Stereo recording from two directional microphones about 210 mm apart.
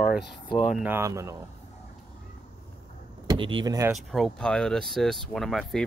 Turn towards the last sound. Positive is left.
turn(degrees=0)  # may be behind; listen again after turning